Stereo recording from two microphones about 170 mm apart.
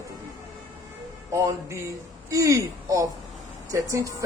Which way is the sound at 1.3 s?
15° right (ahead or behind).